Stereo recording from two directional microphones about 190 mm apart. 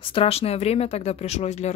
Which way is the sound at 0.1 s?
30° left (ahead or behind).